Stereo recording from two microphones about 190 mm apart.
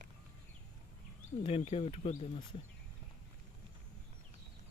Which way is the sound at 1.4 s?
30° left (ahead or behind).